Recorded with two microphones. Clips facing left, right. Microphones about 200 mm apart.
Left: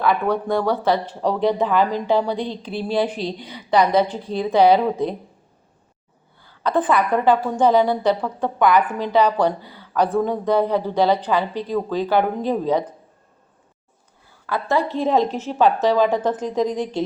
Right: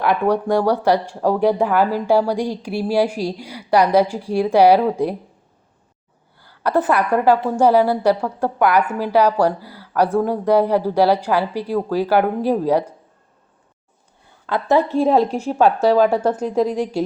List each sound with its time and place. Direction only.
0.0 s speech: 15° right (ahead or behind)
6.6 s speech: 10° right (ahead or behind)
14.4 s a woman's voice: 20° right (ahead or behind)